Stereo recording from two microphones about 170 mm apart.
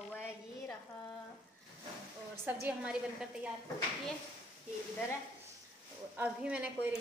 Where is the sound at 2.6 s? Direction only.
5° right (ahead or behind).